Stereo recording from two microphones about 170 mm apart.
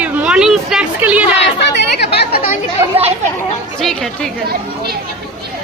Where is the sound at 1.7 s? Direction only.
75° left (ahead or behind).